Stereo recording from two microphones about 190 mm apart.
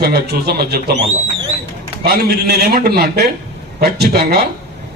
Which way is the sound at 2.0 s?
55° right (ahead or behind).